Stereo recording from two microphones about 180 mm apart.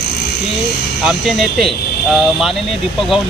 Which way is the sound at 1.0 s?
Centre (ahead or behind).